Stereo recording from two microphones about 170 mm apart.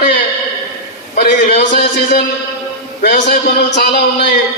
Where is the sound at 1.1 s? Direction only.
60° left (ahead or behind).